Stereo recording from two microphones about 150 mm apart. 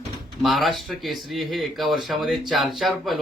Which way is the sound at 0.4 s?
Centre (ahead or behind).